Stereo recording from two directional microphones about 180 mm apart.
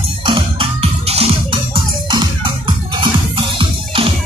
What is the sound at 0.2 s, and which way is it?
Music, 30° right (ahead or behind).